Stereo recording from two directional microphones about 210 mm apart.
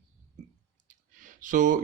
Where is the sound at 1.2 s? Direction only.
40° right (ahead or behind).